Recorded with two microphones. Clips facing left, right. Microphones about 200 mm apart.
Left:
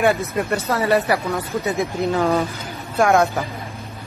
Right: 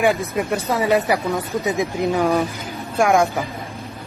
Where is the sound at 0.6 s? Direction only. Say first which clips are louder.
Right 1 dB; 15° right (ahead or behind).